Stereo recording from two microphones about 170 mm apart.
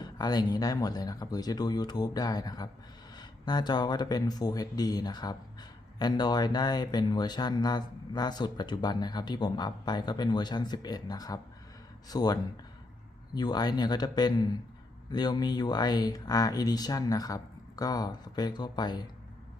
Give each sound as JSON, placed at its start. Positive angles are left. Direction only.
{"t": 0.0, "sound": "speech", "side_deg": 25}